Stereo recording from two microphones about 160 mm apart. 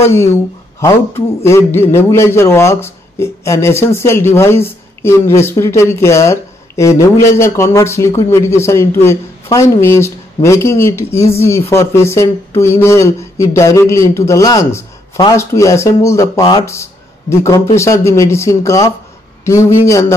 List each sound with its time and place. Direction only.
0.0 s a man's voice: 15° left (ahead or behind)